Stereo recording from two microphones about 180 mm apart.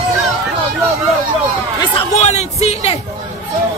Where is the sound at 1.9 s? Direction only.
35° left (ahead or behind).